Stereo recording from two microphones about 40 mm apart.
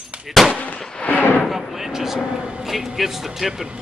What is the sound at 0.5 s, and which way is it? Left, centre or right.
Artillery fire, left.